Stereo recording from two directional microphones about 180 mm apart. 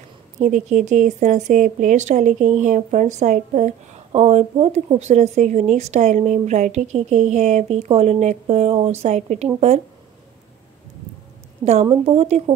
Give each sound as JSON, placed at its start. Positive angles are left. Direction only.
{"t": 0.4, "sound": "speech", "side_deg": -45}
{"t": 11.6, "sound": "speech", "side_deg": -40}